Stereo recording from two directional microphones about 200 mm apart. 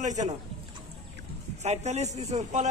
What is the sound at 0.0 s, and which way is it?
Speech, 35° right (ahead or behind).